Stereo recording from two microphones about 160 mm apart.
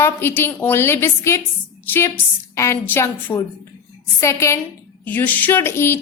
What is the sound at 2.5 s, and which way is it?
A woman's voice, 20° left (ahead or behind).